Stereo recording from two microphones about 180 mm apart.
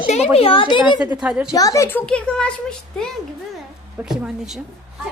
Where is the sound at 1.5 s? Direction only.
20° left (ahead or behind).